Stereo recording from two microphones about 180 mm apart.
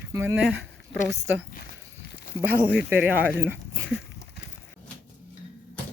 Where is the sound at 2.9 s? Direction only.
10° right (ahead or behind).